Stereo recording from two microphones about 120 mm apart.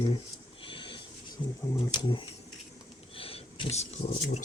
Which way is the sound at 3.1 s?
50° left (ahead or behind).